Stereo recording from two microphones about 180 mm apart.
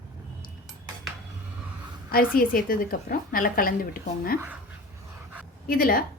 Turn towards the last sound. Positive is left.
turn(degrees=55)  # may be behind; listen again after turning